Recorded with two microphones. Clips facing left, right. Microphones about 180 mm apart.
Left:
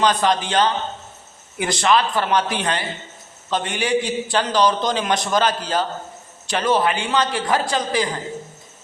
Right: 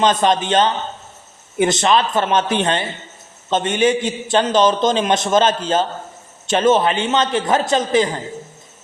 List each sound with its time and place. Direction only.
0.0 s a man's voice: 20° right (ahead or behind)